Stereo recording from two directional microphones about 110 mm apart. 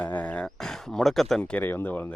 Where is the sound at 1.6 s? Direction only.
20° left (ahead or behind).